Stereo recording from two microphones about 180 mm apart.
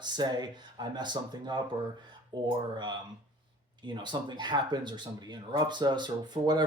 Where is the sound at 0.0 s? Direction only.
25° right (ahead or behind).